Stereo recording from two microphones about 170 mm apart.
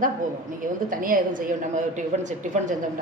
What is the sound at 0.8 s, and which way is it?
A woman's voice, 55° right (ahead or behind).